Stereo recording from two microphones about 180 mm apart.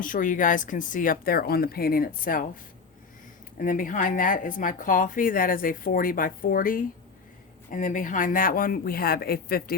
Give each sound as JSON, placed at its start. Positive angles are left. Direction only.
{"t": 0.0, "sound": "speech", "side_deg": 50}
{"t": 3.6, "sound": "speech", "side_deg": 50}